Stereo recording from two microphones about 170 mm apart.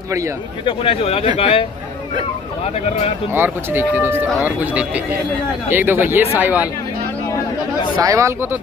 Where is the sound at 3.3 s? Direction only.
10° right (ahead or behind).